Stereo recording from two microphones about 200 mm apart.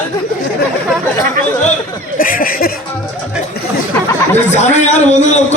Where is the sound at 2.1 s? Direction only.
45° left (ahead or behind).